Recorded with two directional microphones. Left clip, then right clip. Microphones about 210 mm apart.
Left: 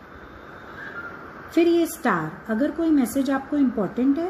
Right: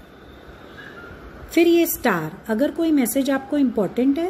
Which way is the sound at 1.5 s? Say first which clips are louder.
Right 3 dB; 20° right (ahead or behind).